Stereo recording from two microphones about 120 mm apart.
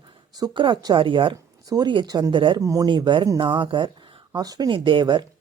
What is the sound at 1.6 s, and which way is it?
Speech, 30° right (ahead or behind).